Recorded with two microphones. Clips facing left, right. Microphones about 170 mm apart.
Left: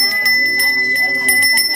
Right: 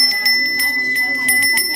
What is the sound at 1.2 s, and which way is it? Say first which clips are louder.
Bicycle bell: left 1 dB; 45° left (ahead or behind).